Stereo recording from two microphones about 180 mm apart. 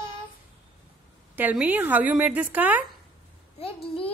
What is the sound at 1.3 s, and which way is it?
A woman's voice, 10° right (ahead or behind).